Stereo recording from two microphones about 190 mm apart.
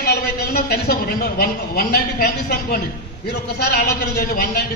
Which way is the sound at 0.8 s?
55° left (ahead or behind).